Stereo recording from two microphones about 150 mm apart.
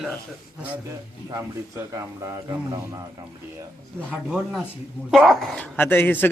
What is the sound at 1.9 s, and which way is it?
Speech, 20° right (ahead or behind).